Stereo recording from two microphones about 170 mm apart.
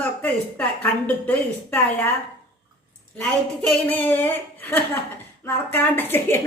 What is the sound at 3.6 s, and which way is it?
A woman's voice, 10° left (ahead or behind).